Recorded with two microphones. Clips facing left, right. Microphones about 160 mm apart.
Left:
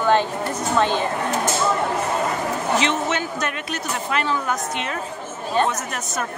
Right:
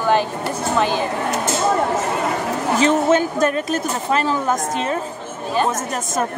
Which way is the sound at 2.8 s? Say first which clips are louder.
Right 7 dB; 40° right (ahead or behind).